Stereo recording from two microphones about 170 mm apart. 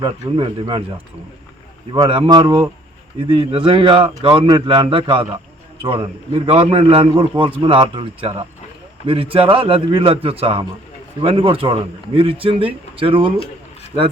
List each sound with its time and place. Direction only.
0.0 s speech: 30° right (ahead or behind)